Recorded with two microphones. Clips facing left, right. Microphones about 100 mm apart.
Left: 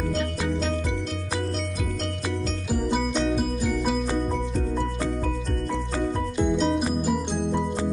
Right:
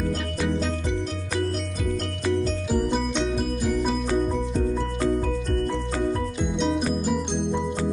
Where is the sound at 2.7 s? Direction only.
Centre (ahead or behind).